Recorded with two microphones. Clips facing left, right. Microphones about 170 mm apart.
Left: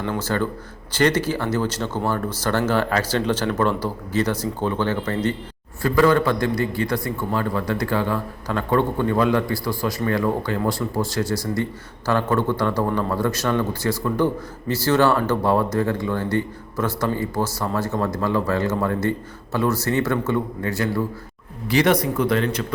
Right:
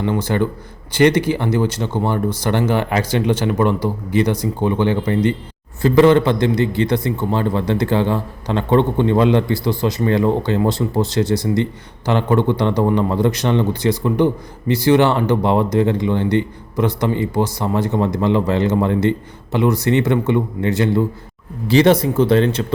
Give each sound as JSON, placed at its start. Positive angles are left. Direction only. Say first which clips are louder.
{"t": 0.3, "sound": "a man's voice", "louder": "right 4 dB", "side_deg": -15}